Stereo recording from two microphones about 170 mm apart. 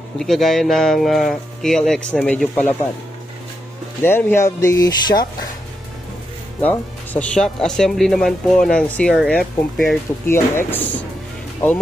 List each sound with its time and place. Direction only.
0.2 s speech: centre (ahead or behind)
4.0 s speech: 15° left (ahead or behind)
6.6 s speech: 10° left (ahead or behind)
10.2 s speech: 15° left (ahead or behind)